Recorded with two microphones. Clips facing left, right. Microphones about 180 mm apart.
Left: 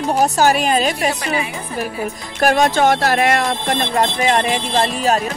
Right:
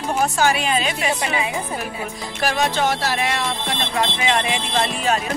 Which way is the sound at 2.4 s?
50° left (ahead or behind).